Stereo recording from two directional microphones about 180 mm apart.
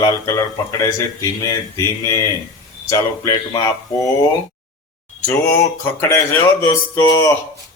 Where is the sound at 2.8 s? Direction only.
15° left (ahead or behind).